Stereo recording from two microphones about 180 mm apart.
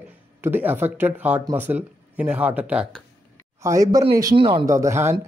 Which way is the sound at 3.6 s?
20° right (ahead or behind).